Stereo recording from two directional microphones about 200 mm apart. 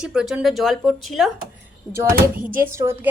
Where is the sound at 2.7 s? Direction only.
15° right (ahead or behind).